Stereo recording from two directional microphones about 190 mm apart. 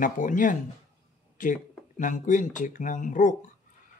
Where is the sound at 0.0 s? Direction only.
45° left (ahead or behind).